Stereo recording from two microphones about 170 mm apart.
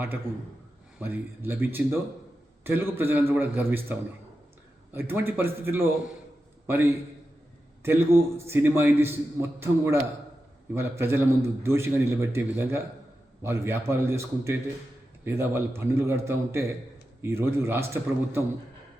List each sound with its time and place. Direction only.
0.9 s a man's voice: 10° right (ahead or behind)